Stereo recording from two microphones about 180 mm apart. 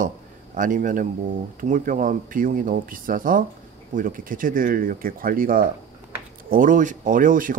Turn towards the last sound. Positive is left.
turn(degrees=-50)  # may be behind; listen again after turning